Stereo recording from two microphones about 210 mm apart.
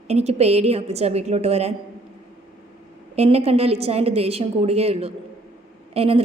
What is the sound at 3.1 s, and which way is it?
A woman's voice, 30° right (ahead or behind).